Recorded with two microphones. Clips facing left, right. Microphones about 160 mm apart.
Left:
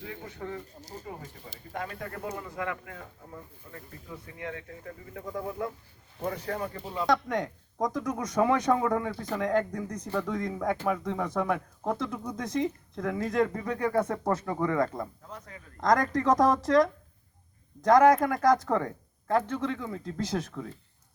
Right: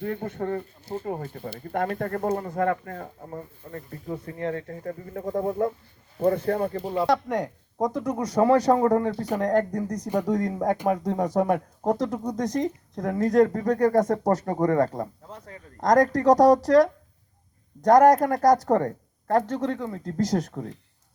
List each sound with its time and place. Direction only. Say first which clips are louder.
0.0 s speech: right 10 dB; 55° right (ahead or behind)
6.5 s speech: right 9 dB; 35° right (ahead or behind)